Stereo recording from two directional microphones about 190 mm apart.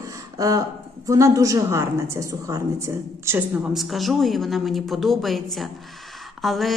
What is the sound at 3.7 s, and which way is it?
A woman's voice, centre (ahead or behind).